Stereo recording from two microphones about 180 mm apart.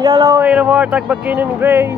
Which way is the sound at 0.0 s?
20° right (ahead or behind).